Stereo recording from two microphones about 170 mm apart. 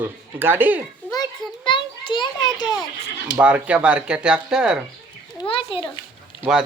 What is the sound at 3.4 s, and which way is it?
Speech, 10° right (ahead or behind).